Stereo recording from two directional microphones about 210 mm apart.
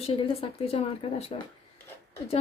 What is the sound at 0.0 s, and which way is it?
Speech, 25° left (ahead or behind).